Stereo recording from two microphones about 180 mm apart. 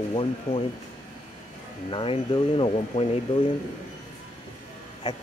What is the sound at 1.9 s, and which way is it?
Speech, 25° left (ahead or behind).